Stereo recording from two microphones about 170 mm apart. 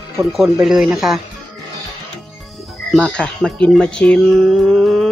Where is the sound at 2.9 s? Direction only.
5° left (ahead or behind).